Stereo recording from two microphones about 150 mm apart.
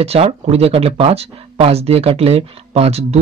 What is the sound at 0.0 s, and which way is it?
Speech, 45° right (ahead or behind).